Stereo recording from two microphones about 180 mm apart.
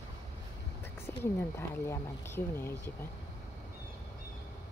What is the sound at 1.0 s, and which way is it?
Speech, 15° left (ahead or behind).